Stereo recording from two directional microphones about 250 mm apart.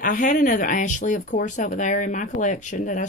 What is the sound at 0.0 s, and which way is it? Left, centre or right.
Speech, left.